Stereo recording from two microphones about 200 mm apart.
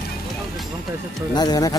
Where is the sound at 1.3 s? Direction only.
20° left (ahead or behind).